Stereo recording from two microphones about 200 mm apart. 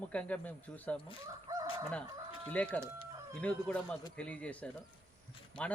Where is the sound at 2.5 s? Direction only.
5° left (ahead or behind).